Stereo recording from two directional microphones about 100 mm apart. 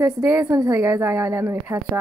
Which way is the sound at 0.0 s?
25° right (ahead or behind).